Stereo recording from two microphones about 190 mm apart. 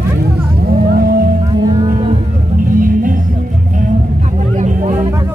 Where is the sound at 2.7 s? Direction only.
45° right (ahead or behind).